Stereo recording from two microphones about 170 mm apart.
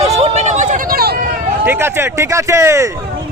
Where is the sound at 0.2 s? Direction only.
40° right (ahead or behind); by 1.2 s 65° right (ahead or behind).